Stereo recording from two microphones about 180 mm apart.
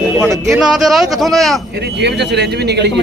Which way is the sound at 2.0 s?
70° right (ahead or behind).